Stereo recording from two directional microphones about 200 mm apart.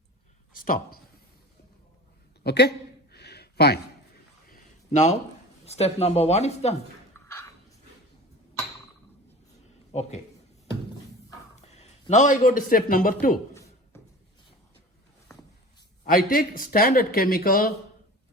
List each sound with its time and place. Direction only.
0.5 s speech: 45° left (ahead or behind)
2.4 s a sound: 55° left (ahead or behind)
4.4 s a sound: 40° left (ahead or behind)
5.6 s speech: 30° left (ahead or behind)
9.9 s a man's voice: 35° left (ahead or behind)
11.5 s a man's voice: 35° left (ahead or behind)
13.5 s a sound: 15° left (ahead or behind)
15.3 s walk: 15° left (ahead or behind)
16.0 s speech: 45° left (ahead or behind)